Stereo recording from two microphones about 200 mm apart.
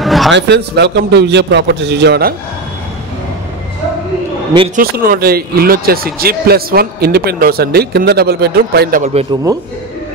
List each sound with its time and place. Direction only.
0.0 s a sound: centre (ahead or behind)
0.3 s a man's voice: 60° right (ahead or behind)
4.7 s speech: 45° right (ahead or behind)
9.5 s a man's voice: 20° right (ahead or behind)